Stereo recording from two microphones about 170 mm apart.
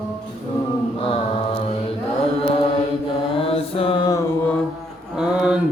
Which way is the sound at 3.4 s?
35° left (ahead or behind).